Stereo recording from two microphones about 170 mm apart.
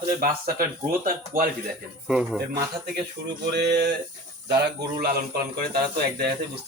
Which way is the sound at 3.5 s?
80° right.